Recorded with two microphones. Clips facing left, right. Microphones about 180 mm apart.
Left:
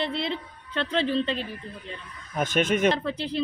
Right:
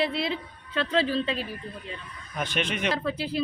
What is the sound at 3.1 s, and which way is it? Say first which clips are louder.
Speech: even; 5° right (ahead or behind).